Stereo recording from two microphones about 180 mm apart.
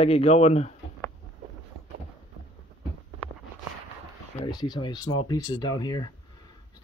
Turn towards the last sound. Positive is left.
turn(degrees=20)  # may be behind; listen again after turning